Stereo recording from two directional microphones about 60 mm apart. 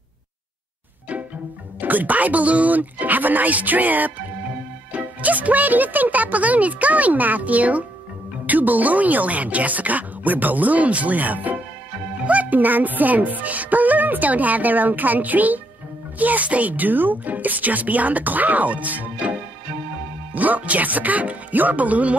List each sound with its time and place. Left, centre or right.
1.8 s speech: right
20.3 s speech: right